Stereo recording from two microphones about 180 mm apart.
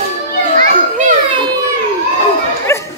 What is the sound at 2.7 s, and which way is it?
Bow-wow, 15° left (ahead or behind).